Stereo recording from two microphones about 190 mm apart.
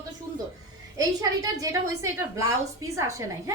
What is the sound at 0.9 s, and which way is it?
A woman's voice, 20° right (ahead or behind).